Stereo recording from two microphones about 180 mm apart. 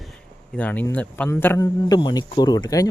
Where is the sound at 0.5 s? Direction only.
10° left (ahead or behind).